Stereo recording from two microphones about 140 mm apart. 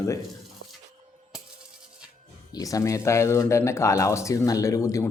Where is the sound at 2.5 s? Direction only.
25° left (ahead or behind).